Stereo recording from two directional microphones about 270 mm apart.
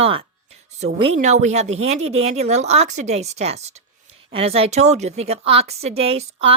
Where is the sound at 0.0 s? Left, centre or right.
Right.